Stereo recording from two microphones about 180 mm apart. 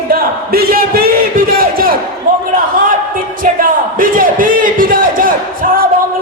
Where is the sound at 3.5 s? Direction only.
50° right (ahead or behind).